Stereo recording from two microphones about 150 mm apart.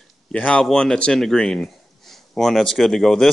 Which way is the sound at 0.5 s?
5° left (ahead or behind).